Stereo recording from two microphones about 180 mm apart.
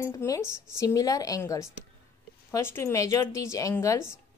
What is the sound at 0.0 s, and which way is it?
Speech, 15° left (ahead or behind).